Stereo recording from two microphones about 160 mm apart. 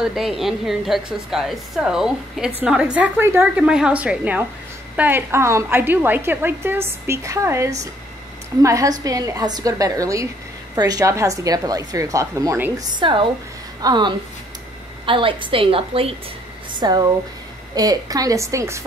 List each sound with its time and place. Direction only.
0.0 s a woman's voice: 5° right (ahead or behind)
12.9 s a woman's voice: 30° right (ahead or behind)
16.8 s a woman's voice: 25° right (ahead or behind)